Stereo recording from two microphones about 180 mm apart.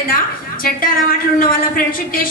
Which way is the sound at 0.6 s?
50° left (ahead or behind).